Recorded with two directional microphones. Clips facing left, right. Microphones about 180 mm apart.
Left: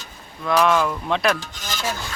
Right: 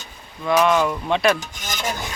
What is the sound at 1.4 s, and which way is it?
Rub, 20° right (ahead or behind).